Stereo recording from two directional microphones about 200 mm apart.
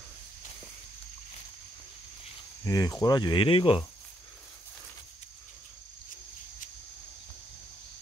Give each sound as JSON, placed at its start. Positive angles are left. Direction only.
{"t": 2.6, "sound": "cricket", "side_deg": 20}